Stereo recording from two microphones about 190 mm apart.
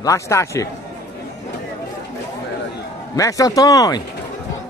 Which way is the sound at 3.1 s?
15° left (ahead or behind).